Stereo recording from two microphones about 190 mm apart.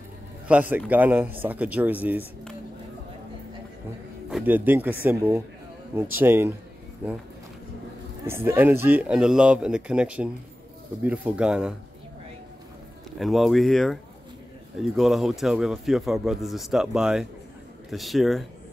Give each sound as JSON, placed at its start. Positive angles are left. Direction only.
{"t": 0.5, "sound": "speech", "side_deg": -5}
{"t": 4.3, "sound": "speech", "side_deg": -5}
{"t": 8.3, "sound": "speech", "side_deg": -10}
{"t": 13.2, "sound": "speech", "side_deg": 0}